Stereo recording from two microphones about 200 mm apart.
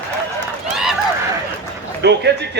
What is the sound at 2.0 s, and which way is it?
Speech, 60° right (ahead or behind).